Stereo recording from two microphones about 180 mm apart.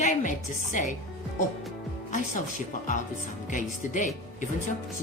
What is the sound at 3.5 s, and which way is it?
Speech, 45° left (ahead or behind).